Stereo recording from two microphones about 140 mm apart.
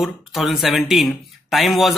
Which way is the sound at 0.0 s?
Centre (ahead or behind).